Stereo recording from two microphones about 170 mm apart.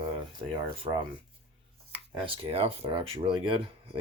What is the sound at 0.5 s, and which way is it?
Speech, 30° right (ahead or behind).